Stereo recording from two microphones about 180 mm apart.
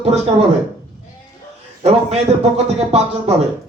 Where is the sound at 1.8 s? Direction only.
35° right (ahead or behind).